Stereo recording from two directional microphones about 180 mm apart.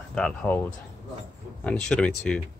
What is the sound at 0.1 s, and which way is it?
Speech, 5° left (ahead or behind).